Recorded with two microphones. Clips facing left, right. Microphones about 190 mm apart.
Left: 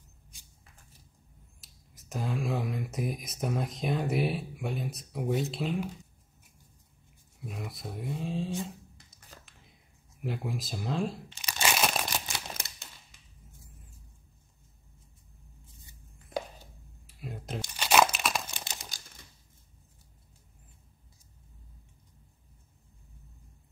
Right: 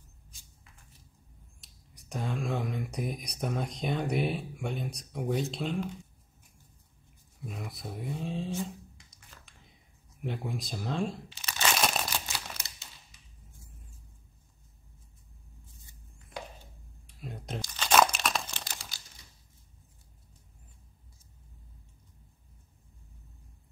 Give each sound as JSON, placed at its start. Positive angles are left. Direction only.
{"t": 1.6, "sound": "speech", "side_deg": 0}
{"t": 7.4, "sound": "speech", "side_deg": 0}
{"t": 9.4, "sound": "a sound", "side_deg": 0}
{"t": 10.2, "sound": "speech", "side_deg": 0}
{"t": 11.3, "sound": "crumpling", "side_deg": 10}
{"t": 12.5, "sound": "a sound", "side_deg": 55}
{"t": 17.1, "sound": "tearing", "side_deg": 5}
{"t": 18.6, "sound": "crumpling", "side_deg": 20}
{"t": 18.9, "sound": "typing", "side_deg": 50}